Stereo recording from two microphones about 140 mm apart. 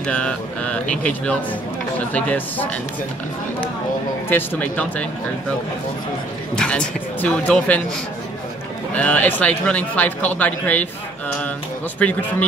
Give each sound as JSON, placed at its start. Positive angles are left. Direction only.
{"t": 0.0, "sound": "a man's voice", "side_deg": 5}
{"t": 4.3, "sound": "a man's voice", "side_deg": 10}
{"t": 6.5, "sound": "a man's voice", "side_deg": 5}
{"t": 8.9, "sound": "a man's voice", "side_deg": 10}
{"t": 12.0, "sound": "a man's voice", "side_deg": 10}